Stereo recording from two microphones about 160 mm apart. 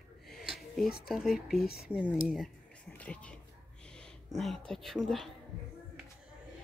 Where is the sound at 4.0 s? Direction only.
5° left (ahead or behind).